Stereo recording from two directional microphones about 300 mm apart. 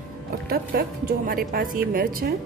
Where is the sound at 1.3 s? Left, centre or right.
Right.